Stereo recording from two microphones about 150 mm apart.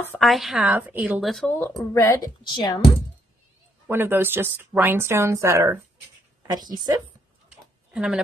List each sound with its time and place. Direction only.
0.2 s speech: centre (ahead or behind)
2.0 s speech: 20° left (ahead or behind)
3.8 s speech: 15° right (ahead or behind)
7.9 s speech: 5° right (ahead or behind)